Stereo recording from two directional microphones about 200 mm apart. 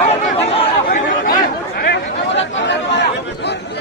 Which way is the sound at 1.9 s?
60° left (ahead or behind).